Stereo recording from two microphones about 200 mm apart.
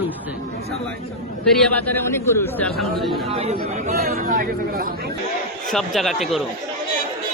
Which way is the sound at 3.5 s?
50° right (ahead or behind).